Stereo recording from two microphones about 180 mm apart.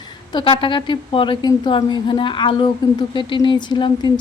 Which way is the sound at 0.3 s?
25° left (ahead or behind).